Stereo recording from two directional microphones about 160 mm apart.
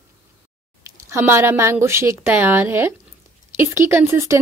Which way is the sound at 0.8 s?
15° right (ahead or behind).